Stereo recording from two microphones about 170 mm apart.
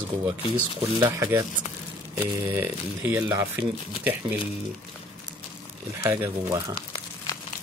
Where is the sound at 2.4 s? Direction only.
10° right (ahead or behind).